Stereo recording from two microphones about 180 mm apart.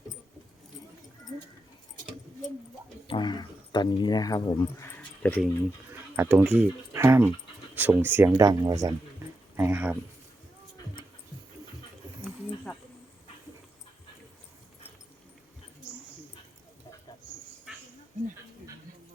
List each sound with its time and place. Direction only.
3.1 s speech: 25° left (ahead or behind); by 5.5 s 10° left (ahead or behind)
6.1 s speech: 10° right (ahead or behind)
17.7 s dog: centre (ahead or behind)